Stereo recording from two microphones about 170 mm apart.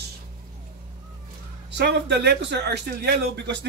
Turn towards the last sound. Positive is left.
turn(degrees=-80)